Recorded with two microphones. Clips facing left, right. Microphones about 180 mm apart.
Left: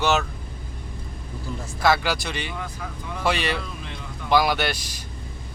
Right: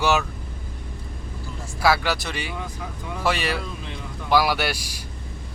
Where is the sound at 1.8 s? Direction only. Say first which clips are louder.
Even; 5° right (ahead or behind).